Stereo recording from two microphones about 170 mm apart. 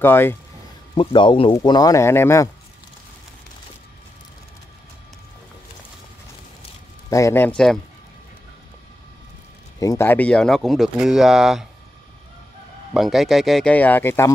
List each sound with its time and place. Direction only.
0.0 s speech: 15° left (ahead or behind)
0.9 s speech: 30° left (ahead or behind)
7.1 s speech: 20° left (ahead or behind)
9.8 s speech: 15° left (ahead or behind); by 11.6 s centre (ahead or behind)
12.9 s speech: centre (ahead or behind)